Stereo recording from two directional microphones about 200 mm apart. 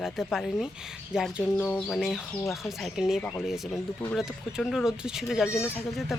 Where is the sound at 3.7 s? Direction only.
10° left (ahead or behind).